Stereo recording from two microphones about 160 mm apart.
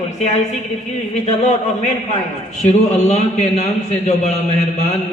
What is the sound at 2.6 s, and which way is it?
Speech, 45° left (ahead or behind).